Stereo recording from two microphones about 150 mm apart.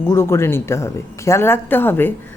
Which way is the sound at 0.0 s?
15° left (ahead or behind).